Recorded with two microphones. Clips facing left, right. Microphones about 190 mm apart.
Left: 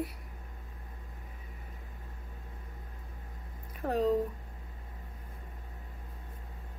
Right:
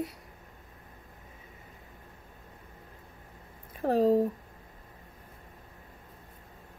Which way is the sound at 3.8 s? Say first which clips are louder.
Right 5 dB; 35° right (ahead or behind).